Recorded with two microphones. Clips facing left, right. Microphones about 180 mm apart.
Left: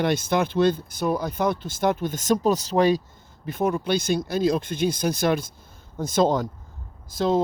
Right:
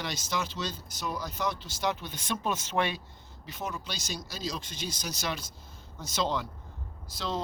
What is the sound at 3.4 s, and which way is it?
Speech, 55° left (ahead or behind).